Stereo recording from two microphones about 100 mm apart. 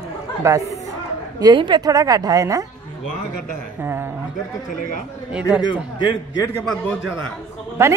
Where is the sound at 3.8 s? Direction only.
25° right (ahead or behind).